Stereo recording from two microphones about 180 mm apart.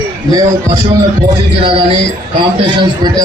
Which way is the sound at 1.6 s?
30° right (ahead or behind).